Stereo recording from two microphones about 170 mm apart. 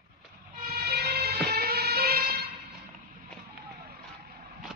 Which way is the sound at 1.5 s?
65° right (ahead or behind).